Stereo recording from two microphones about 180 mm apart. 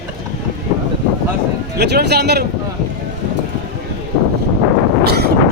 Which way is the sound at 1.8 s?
70° right (ahead or behind).